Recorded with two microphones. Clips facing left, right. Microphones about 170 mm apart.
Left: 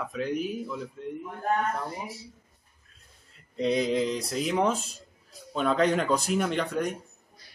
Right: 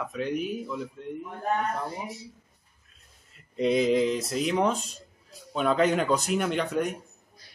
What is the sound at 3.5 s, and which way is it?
Speech, 5° right (ahead or behind).